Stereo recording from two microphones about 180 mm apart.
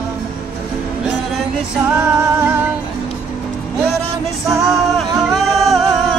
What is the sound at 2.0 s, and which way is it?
Music, 15° right (ahead or behind).